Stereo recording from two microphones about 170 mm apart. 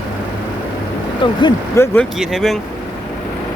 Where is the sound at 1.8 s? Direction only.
5° left (ahead or behind).